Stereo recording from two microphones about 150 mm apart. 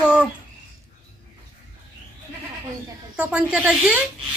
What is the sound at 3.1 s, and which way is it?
Speech, 10° right (ahead or behind).